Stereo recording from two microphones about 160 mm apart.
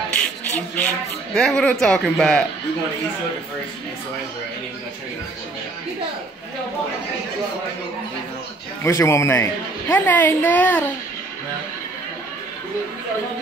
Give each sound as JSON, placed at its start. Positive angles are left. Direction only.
{"t": 0.1, "sound": "a woman's voice", "side_deg": 10}
{"t": 8.8, "sound": "a woman's voice", "side_deg": 20}